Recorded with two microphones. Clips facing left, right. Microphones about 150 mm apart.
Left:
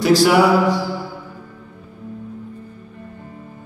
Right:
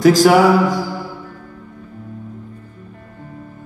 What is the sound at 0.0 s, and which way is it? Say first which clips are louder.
Mantra: right 3 dB; 45° right (ahead or behind).